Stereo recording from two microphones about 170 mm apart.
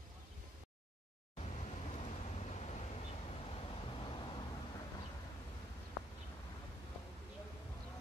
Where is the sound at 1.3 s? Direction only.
40° left (ahead or behind).